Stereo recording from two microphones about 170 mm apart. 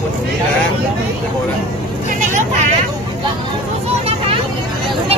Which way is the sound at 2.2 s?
45° right (ahead or behind).